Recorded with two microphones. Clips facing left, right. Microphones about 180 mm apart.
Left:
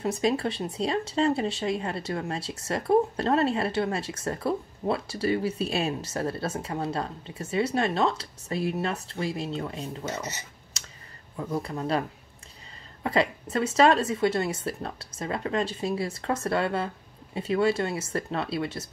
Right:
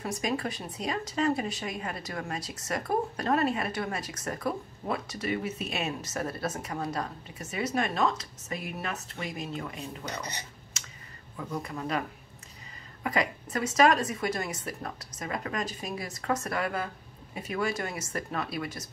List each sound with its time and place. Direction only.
0.0 s speech: 25° left (ahead or behind)
11.6 s speech: 30° left (ahead or behind)
13.0 s speech: 30° left (ahead or behind)